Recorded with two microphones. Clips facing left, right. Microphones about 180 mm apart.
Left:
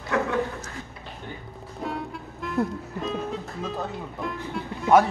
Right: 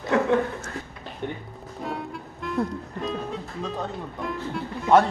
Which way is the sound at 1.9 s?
Centre (ahead or behind).